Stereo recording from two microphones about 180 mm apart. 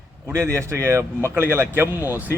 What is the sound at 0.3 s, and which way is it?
Speech, 15° right (ahead or behind).